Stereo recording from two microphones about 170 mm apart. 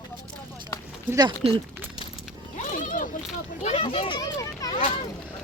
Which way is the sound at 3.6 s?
35° left (ahead or behind).